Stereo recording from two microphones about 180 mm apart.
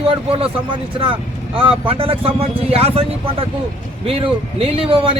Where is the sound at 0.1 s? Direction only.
30° right (ahead or behind).